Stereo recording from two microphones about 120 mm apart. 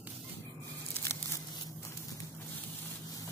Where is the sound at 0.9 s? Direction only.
20° left (ahead or behind).